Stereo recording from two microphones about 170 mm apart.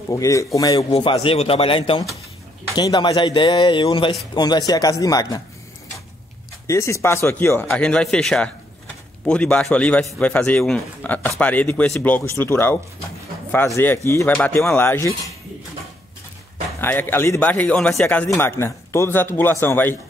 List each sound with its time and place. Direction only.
0.1 s speech: 20° left (ahead or behind)
6.7 s a man's voice: 15° left (ahead or behind)
13.7 s a man's voice: 15° left (ahead or behind)
16.8 s a man's voice: 10° left (ahead or behind)